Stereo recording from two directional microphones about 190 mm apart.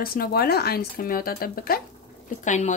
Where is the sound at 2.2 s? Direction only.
40° left (ahead or behind).